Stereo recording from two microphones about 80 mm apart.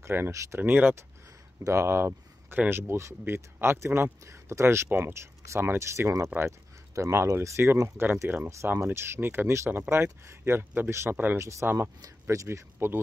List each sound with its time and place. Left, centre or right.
0.0 s speech: right
0.6 s speech: right
1.6 s speech: right
10.9 s speech: right
12.0 s speech: right
12.7 s speech: right